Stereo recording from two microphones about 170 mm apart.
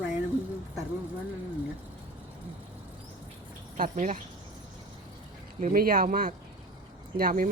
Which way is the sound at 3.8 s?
45° right (ahead or behind).